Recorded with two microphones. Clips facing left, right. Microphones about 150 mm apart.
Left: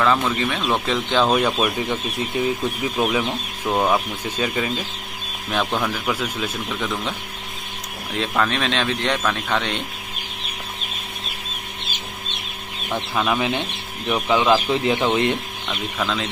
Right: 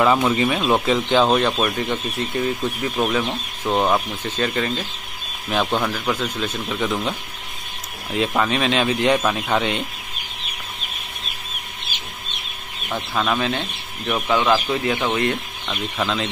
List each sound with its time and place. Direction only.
0.0 s speech: 15° right (ahead or behind); by 4.8 s 10° left (ahead or behind)
5.5 s speech: 5° right (ahead or behind)
6.7 s speech: 5° right (ahead or behind)
13.1 s speech: 5° left (ahead or behind)
15.7 s speech: centre (ahead or behind)